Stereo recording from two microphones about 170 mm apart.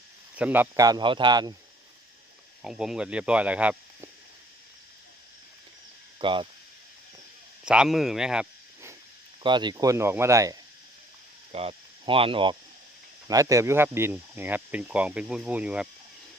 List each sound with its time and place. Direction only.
0.3 s speech: 10° right (ahead or behind)
0.9 s speech: 25° right (ahead or behind)
2.6 s speech: 5° right (ahead or behind)
6.1 s speech: 30° right (ahead or behind)
7.6 s speech: 5° right (ahead or behind)
9.4 s speech: 25° right (ahead or behind)
11.5 s speech: 35° right (ahead or behind)
13.2 s speech: 20° right (ahead or behind)